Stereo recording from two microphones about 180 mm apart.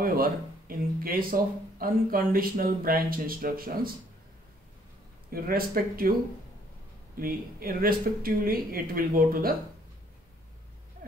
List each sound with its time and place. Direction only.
0.0 s speech: 55° right (ahead or behind)
5.3 s speech: 55° right (ahead or behind)
7.2 s speech: 55° right (ahead or behind)
11.0 s a sound: 50° right (ahead or behind)